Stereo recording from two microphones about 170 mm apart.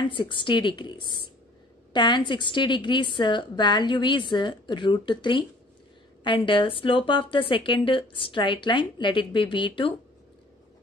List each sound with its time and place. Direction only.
0.0 s speech: 30° left (ahead or behind)